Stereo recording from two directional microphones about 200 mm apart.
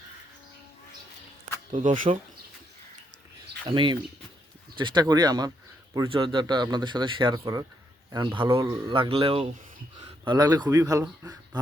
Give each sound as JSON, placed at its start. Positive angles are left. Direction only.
{"t": 1.7, "sound": "speech", "side_deg": -30}
{"t": 3.7, "sound": "speech", "side_deg": -25}
{"t": 8.9, "sound": "speech", "side_deg": -25}